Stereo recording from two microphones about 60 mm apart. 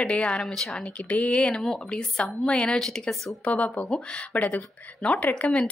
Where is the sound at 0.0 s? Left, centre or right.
Centre.